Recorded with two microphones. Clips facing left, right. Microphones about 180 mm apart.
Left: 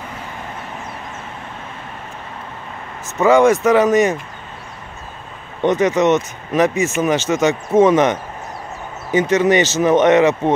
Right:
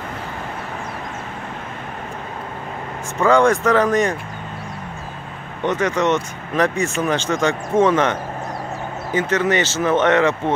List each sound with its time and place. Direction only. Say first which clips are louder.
3.2 s speech: left 3 dB; 5° left (ahead or behind)
5.6 s speech: left 5 dB; 15° left (ahead or behind)
6.7 s speech: left 3 dB; 5° left (ahead or behind)
9.3 s speech: left 5 dB; 15° left (ahead or behind)